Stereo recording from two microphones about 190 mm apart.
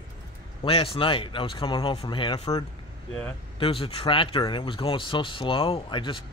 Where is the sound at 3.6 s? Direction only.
30° left (ahead or behind).